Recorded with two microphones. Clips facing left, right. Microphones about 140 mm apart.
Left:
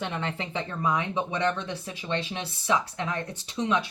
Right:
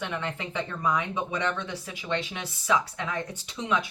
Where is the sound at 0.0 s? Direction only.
30° left (ahead or behind).